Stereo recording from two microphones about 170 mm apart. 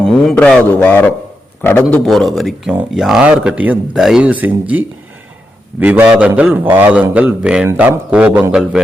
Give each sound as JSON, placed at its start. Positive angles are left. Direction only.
{"t": 0.0, "sound": "speech", "side_deg": 5}
{"t": 5.8, "sound": "a man's voice", "side_deg": -10}